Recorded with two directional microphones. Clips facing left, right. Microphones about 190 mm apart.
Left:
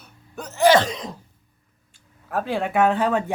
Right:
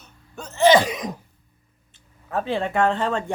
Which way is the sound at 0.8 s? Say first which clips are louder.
Right 1 dB; 10° right (ahead or behind).